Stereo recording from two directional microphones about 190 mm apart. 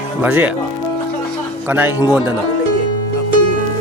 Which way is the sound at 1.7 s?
10° right (ahead or behind).